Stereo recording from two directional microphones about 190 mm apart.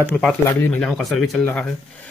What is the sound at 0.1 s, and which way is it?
Speech, 5° left (ahead or behind).